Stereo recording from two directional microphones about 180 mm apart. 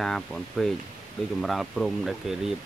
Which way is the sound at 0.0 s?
Centre (ahead or behind).